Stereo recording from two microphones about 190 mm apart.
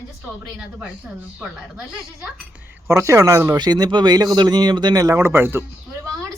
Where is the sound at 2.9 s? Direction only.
15° right (ahead or behind).